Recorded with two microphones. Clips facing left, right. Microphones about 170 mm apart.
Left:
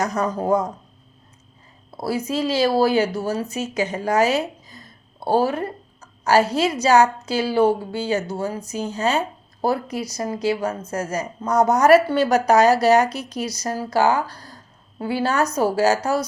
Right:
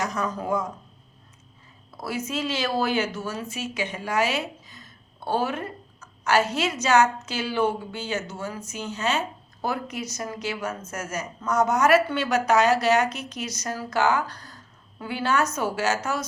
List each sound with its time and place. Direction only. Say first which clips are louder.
0.0 s a woman's voice: left 6 dB; 40° left (ahead or behind)
2.0 s a woman's voice: left 6 dB; 35° left (ahead or behind)